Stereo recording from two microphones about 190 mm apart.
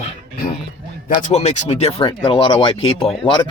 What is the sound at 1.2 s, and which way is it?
Speech, 35° left (ahead or behind).